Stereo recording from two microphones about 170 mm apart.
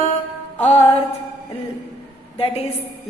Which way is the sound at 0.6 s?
40° left (ahead or behind).